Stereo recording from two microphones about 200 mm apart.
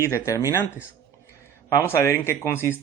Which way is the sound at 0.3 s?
15° left (ahead or behind).